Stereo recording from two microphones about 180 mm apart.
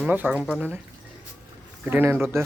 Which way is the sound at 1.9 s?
10° right (ahead or behind).